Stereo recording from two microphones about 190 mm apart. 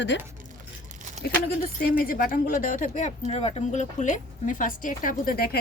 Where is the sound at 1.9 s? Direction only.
50° left (ahead or behind).